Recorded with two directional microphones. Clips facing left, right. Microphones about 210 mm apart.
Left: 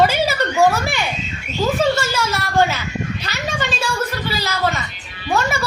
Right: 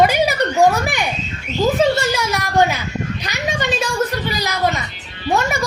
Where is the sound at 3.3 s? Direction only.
15° right (ahead or behind).